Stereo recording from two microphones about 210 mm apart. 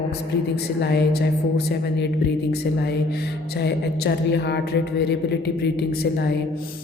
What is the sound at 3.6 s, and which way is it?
A woman's voice, 55° left (ahead or behind).